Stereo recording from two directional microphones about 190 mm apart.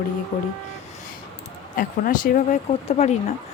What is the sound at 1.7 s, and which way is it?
Speech, 45° left (ahead or behind).